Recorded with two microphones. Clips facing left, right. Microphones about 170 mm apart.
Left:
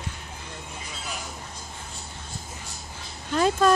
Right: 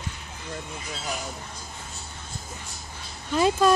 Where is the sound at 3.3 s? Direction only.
10° right (ahead or behind).